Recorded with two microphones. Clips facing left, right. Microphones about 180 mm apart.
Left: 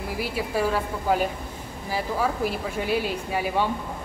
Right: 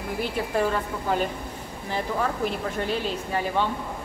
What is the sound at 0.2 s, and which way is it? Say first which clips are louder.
Speech: right 1 dB; 5° left (ahead or behind).